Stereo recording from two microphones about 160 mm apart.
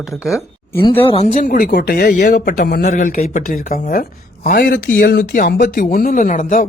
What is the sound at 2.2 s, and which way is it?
Speech, 55° left (ahead or behind).